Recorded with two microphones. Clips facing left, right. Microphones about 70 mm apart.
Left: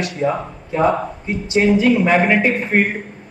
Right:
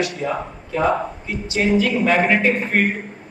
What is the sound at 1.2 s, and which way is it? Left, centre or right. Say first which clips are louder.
Speech: left 6 dB; left.